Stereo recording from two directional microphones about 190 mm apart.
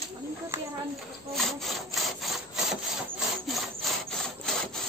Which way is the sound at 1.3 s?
Centre (ahead or behind).